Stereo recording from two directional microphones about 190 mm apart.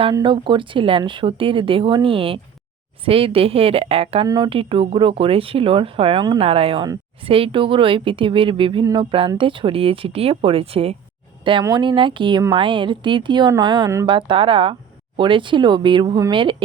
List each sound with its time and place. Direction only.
0.0 s speech: 25° right (ahead or behind)